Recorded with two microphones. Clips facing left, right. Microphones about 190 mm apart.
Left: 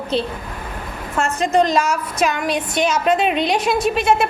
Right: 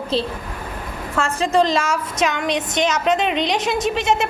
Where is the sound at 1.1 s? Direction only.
30° right (ahead or behind).